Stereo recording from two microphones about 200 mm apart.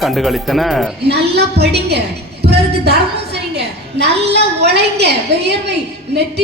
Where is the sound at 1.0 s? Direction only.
55° right (ahead or behind).